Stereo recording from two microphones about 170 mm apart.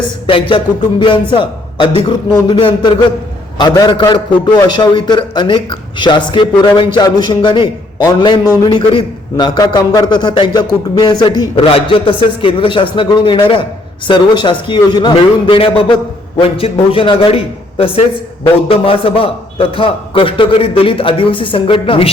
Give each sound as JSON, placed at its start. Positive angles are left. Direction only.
{"t": 0.3, "sound": "a man's voice", "side_deg": 30}